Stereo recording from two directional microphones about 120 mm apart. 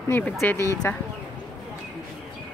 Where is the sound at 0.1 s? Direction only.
15° left (ahead or behind).